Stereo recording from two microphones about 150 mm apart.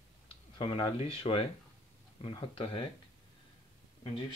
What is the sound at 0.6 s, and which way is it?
Speech, 35° left (ahead or behind).